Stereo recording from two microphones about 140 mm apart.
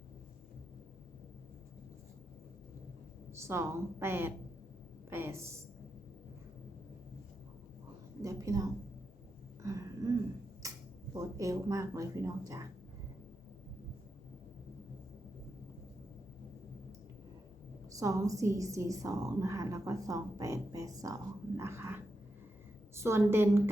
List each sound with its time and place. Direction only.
3.3 s a woman's voice: 20° right (ahead or behind)
8.2 s a woman's voice: 25° right (ahead or behind)
9.6 s a sound: 25° right (ahead or behind)
11.1 s a woman's voice: 25° right (ahead or behind)
17.9 s a woman's voice: 25° right (ahead or behind)